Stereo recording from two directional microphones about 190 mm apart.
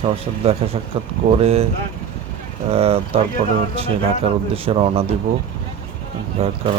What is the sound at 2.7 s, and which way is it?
Speech, 30° right (ahead or behind).